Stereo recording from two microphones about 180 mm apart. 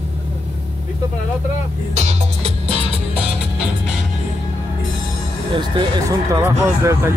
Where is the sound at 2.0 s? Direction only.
35° right (ahead or behind).